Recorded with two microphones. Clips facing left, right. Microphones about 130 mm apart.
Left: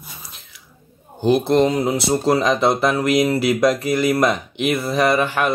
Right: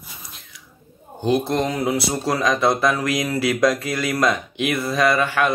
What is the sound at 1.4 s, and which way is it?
Speech, 25° left (ahead or behind).